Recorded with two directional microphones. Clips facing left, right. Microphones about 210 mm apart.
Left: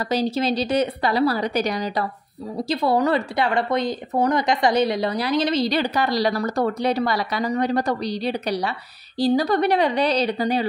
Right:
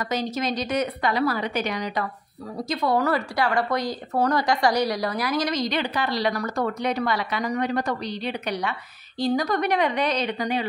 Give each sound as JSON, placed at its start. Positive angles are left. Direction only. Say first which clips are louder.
{"t": 0.1, "sound": "a woman's voice", "louder": "left 6 dB", "side_deg": 30}